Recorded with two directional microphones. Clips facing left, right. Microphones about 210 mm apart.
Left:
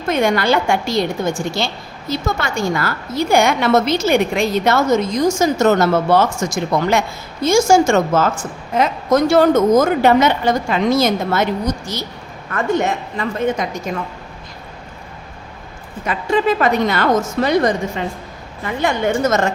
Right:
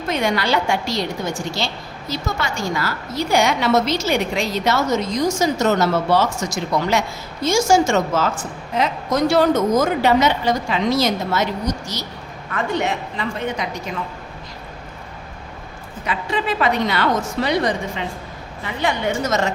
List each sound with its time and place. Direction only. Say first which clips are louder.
0.1 s a woman's voice: left 4 dB; 50° left (ahead or behind)
12.5 s a woman's voice: left 4 dB; 45° left (ahead or behind)
16.0 s a woman's voice: left 6 dB; 45° left (ahead or behind)